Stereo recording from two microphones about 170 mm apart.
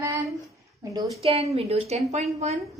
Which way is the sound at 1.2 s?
35° right (ahead or behind).